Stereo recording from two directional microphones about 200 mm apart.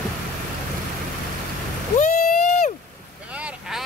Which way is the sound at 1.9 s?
45° left (ahead or behind).